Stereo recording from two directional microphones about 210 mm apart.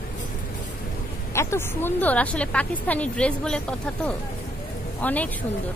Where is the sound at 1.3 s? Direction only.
10° left (ahead or behind).